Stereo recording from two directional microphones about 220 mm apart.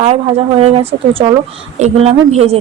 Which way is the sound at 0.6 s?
25° right (ahead or behind).